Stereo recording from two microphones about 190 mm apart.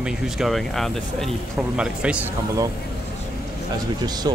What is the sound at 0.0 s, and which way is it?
Speech, centre (ahead or behind).